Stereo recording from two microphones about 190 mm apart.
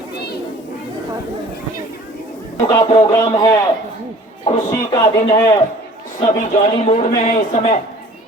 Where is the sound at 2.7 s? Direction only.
20° left (ahead or behind).